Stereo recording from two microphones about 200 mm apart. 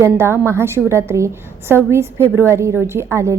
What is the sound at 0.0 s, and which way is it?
A woman's voice, 15° right (ahead or behind).